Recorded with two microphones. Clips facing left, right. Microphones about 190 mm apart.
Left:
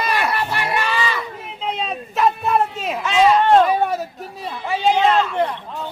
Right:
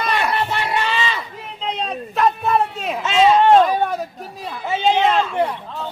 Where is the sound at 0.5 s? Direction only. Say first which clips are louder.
Even; 20° right (ahead or behind).